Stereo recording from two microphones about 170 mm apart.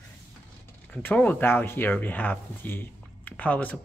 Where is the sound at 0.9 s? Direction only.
10° left (ahead or behind).